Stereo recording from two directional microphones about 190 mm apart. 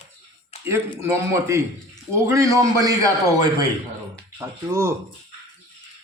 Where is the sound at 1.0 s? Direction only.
15° right (ahead or behind).